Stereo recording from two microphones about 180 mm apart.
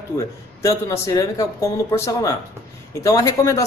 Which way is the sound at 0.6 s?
15° left (ahead or behind).